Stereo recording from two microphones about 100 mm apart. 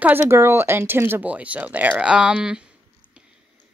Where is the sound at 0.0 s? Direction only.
20° right (ahead or behind).